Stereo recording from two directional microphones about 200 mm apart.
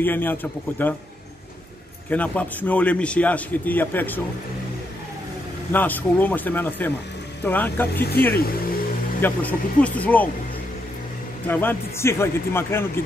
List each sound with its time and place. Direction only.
0.0 s a man's voice: 10° left (ahead or behind)
2.0 s a man's voice: 5° left (ahead or behind)
5.7 s a man's voice: 10° left (ahead or behind)
7.9 s speech: 55° left (ahead or behind)
9.2 s a man's voice: 10° left (ahead or behind)
11.4 s a man's voice: 10° left (ahead or behind)